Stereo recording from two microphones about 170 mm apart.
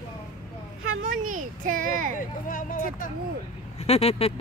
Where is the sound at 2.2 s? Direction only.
50° left (ahead or behind).